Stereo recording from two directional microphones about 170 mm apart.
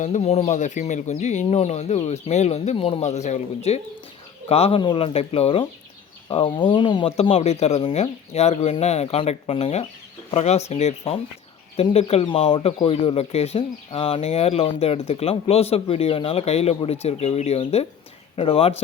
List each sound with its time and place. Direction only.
0.0 s speech: 45° left (ahead or behind)